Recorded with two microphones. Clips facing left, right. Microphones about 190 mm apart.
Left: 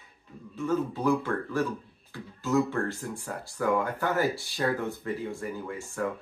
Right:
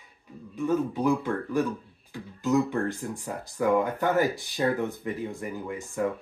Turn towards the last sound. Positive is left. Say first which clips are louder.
# right 3 dB
turn(degrees=-15)  # may be behind; listen again after turning